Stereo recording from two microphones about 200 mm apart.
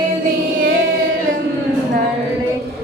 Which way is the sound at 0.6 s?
75° right (ahead or behind).